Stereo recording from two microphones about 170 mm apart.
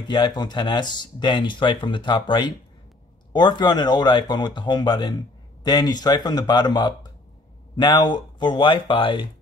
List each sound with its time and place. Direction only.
0.0 s speech: 25° left (ahead or behind)